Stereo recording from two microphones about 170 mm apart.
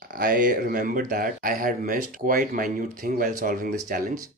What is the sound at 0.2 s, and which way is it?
Speech, 55° right (ahead or behind).